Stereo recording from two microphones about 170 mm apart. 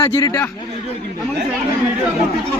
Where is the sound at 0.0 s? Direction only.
20° left (ahead or behind).